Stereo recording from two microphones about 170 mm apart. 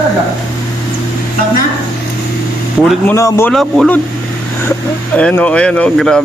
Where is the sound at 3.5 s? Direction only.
Centre (ahead or behind).